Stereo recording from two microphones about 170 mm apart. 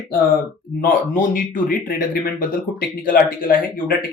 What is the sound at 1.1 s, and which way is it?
Speech, 55° left (ahead or behind).